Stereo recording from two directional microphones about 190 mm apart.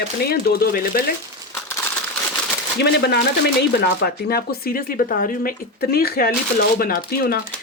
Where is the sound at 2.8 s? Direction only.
60° left (ahead or behind).